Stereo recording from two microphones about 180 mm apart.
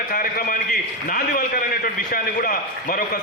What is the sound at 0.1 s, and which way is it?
A man's voice, 55° left (ahead or behind).